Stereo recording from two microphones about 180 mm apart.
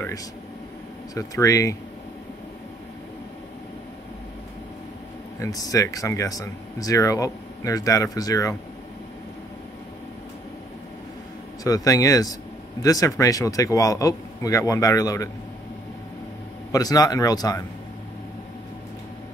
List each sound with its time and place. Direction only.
1.1 s speech: 20° left (ahead or behind)
5.4 s speech: 20° left (ahead or behind)
11.6 s speech: 20° left (ahead or behind)
16.7 s speech: 20° left (ahead or behind)